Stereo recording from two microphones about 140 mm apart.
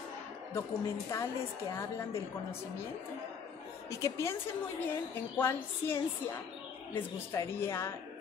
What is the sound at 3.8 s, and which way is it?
A woman's voice, 20° left (ahead or behind).